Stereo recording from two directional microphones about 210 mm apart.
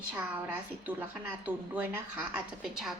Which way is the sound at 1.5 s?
5° right (ahead or behind).